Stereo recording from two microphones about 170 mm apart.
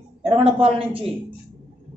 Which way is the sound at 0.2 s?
35° right (ahead or behind).